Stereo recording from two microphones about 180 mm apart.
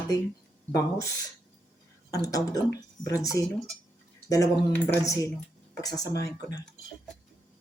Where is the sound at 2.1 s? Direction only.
20° left (ahead or behind).